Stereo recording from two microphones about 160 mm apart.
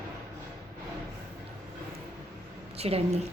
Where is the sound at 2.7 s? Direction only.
40° right (ahead or behind).